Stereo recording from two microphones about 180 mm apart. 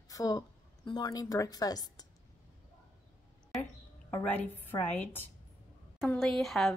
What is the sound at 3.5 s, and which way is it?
A woman's voice, centre (ahead or behind).